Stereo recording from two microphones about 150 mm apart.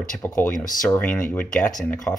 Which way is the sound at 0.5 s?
65° left (ahead or behind).